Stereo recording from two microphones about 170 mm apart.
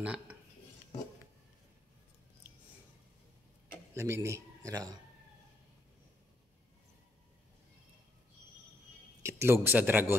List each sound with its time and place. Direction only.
0.0 s a sound: 5° right (ahead or behind)
3.9 s speech: 15° right (ahead or behind)
9.2 s speech: 15° right (ahead or behind)